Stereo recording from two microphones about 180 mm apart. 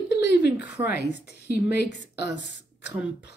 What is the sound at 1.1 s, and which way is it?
A woman's voice, 70° left (ahead or behind).